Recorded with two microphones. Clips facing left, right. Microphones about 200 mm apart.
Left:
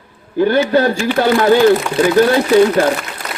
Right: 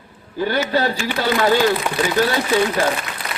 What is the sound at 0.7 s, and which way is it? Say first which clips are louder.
Speech: left 6 dB; 50° left (ahead or behind).